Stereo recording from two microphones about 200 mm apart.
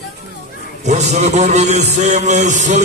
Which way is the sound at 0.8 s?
35° right (ahead or behind).